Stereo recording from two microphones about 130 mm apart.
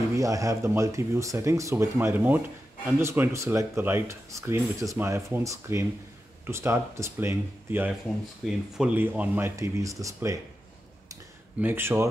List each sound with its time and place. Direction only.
0.1 s speech: 25° right (ahead or behind)
8.5 s speech: 5° right (ahead or behind)
9.4 s speech: 25° right (ahead or behind)
11.6 s speech: 20° right (ahead or behind)